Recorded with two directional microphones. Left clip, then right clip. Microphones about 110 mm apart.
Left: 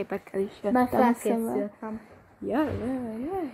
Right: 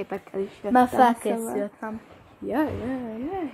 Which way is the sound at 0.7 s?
25° right (ahead or behind).